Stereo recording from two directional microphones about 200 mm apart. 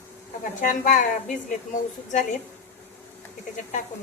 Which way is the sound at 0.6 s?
40° left (ahead or behind).